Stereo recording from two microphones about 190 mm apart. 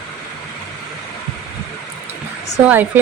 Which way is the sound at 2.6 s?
10° right (ahead or behind).